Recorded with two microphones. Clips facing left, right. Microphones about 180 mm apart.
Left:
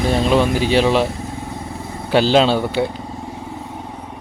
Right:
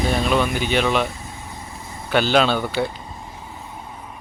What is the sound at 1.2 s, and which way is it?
Vehicle, 65° left (ahead or behind).